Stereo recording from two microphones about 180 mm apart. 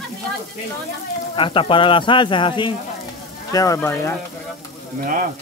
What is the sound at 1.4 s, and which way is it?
Speech, 30° left (ahead or behind).